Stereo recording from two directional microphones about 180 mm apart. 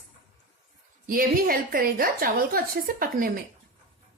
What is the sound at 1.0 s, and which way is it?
A woman's voice, 50° right (ahead or behind).